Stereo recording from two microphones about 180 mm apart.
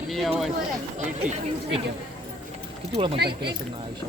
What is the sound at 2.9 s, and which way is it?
Speech, 30° right (ahead or behind).